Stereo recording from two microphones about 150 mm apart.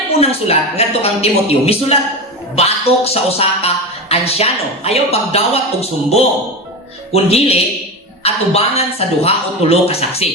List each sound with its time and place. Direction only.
0.2 s a man's voice: 40° left (ahead or behind)